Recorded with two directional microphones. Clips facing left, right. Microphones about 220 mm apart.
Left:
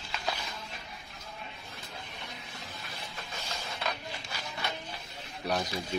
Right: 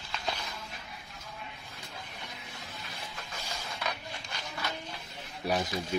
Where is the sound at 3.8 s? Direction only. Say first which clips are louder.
Left 1 dB; 25° left (ahead or behind).